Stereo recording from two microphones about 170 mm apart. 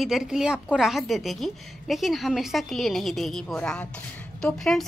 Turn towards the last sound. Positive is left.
turn(degrees=5)  # may be behind; listen again after turning